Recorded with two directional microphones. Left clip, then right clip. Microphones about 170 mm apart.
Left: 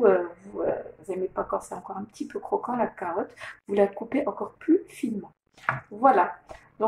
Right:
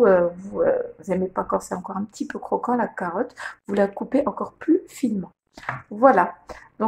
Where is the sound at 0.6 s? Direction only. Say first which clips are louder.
Right 7 dB; 55° right (ahead or behind).